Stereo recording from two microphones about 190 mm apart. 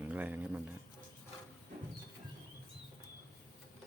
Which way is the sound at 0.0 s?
10° right (ahead or behind).